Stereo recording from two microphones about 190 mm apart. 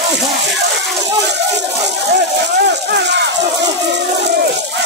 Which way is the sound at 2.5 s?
65° right (ahead or behind).